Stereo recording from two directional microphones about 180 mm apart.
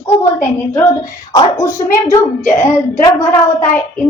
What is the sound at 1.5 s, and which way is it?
A woman's voice, 15° left (ahead or behind).